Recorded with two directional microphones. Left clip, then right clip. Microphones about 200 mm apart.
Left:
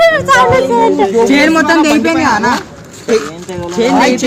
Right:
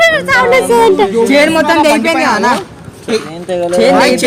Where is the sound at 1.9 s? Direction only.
55° right (ahead or behind).